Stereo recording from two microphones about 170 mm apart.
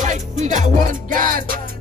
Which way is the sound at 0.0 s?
45° right (ahead or behind).